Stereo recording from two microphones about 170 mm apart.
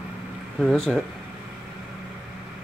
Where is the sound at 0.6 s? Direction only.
Centre (ahead or behind).